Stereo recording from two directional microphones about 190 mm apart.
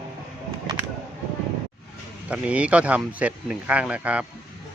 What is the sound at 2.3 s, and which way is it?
Speech, 5° right (ahead or behind).